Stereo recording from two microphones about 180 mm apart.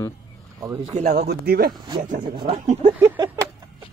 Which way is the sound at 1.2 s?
65° right (ahead or behind).